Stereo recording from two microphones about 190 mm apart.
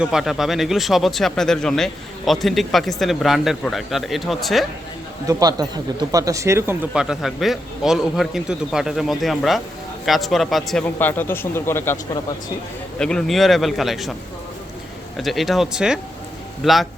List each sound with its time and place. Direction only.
0.0 s speech: 5° right (ahead or behind)
5.3 s speech: 20° right (ahead or behind); by 11.9 s 10° left (ahead or behind)
13.0 s speech: 5° left (ahead or behind)
15.2 s speech: centre (ahead or behind)